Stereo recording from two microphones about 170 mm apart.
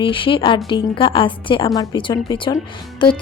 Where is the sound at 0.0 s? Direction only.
30° left (ahead or behind).